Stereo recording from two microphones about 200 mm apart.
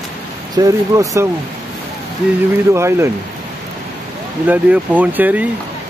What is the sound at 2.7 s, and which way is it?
Speech, 15° right (ahead or behind).